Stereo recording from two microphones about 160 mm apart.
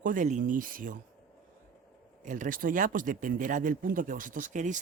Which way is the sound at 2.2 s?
55° right (ahead or behind).